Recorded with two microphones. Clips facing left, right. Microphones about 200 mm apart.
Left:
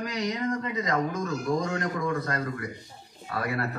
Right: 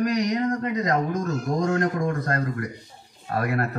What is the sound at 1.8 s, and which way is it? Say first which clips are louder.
Speech: right 4 dB; 55° right (ahead or behind).